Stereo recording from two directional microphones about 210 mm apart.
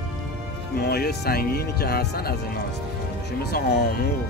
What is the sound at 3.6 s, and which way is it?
Speech, 45° left (ahead or behind).